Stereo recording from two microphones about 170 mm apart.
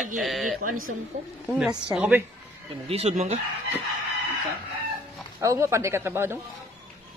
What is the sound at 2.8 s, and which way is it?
Speech, 35° right (ahead or behind).